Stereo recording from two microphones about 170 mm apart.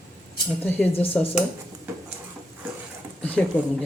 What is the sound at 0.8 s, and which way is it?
Speech, 5° left (ahead or behind).